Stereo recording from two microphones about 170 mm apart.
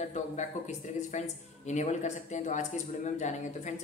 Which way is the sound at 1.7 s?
45° left (ahead or behind).